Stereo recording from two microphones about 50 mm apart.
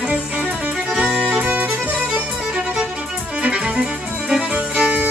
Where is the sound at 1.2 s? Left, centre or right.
Right.